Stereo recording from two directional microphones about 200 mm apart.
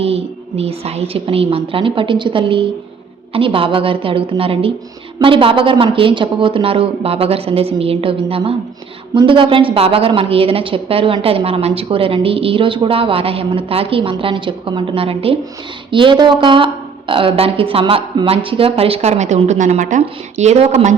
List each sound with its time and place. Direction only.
0.0 s a woman's voice: 30° right (ahead or behind)